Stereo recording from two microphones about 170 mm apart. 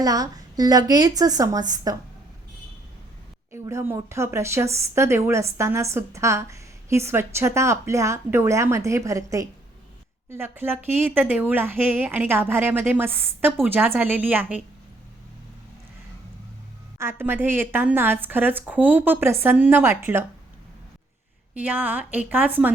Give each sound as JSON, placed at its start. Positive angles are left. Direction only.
{"t": 0.0, "sound": "a woman's voice", "side_deg": -20}
{"t": 3.5, "sound": "a woman's voice", "side_deg": -15}
{"t": 17.0, "sound": "a woman's voice", "side_deg": -15}
{"t": 21.5, "sound": "a woman's voice", "side_deg": -10}